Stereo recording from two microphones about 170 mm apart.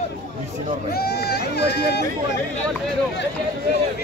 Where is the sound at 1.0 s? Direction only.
70° left (ahead or behind).